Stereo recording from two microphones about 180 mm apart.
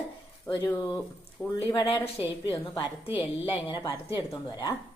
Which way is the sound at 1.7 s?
25° left (ahead or behind).